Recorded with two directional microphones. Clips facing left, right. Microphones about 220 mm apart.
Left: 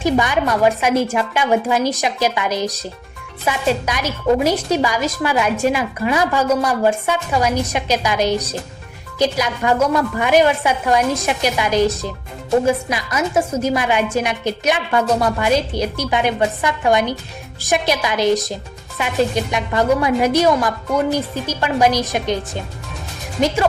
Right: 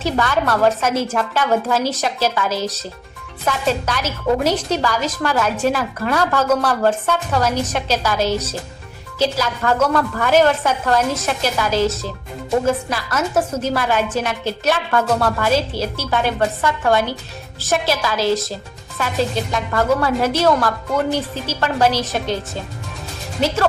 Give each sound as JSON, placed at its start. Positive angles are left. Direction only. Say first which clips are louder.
{"t": 0.0, "sound": "speech", "louder": "left 2 dB", "side_deg": 15}